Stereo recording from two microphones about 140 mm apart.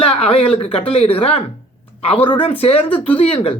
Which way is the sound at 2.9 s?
10° left (ahead or behind).